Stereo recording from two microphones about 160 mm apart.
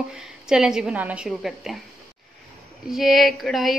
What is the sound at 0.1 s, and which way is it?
A woman's voice, 5° right (ahead or behind).